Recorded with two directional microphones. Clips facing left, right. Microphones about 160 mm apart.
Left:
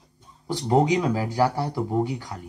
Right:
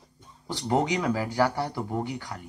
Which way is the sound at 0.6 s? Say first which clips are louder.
Left 4 dB; 25° left (ahead or behind).